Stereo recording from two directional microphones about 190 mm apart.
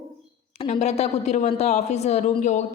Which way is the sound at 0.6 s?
35° left (ahead or behind).